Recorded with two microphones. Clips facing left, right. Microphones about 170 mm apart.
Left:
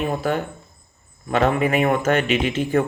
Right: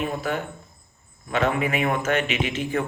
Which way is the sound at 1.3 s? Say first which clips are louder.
Left 4 dB; 40° left (ahead or behind).